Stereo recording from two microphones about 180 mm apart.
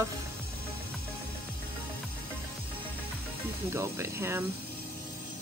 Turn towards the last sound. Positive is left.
turn(degrees=-15)  # may be behind; listen again after turning